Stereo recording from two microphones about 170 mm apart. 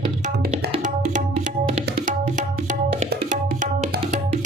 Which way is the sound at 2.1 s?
50° right (ahead or behind).